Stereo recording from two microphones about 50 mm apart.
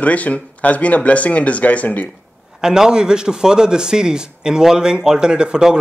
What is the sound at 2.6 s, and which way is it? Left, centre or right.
A man's voice, centre.